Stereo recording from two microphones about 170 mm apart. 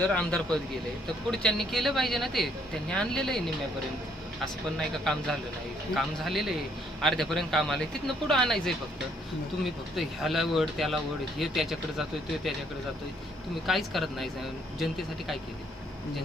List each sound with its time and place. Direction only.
0.1 s speech: 5° left (ahead or behind)
9.9 s speech: centre (ahead or behind)
13.7 s speech: centre (ahead or behind)